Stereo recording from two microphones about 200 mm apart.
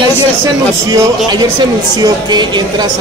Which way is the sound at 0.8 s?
20° right (ahead or behind).